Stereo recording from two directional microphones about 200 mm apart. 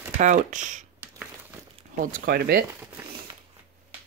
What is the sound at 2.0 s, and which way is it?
Speech, 45° right (ahead or behind).